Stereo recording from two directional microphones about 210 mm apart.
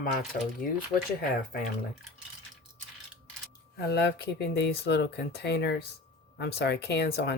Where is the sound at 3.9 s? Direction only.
50° left (ahead or behind).